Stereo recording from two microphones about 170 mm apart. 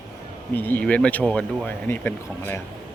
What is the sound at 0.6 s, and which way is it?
Speech, 10° left (ahead or behind).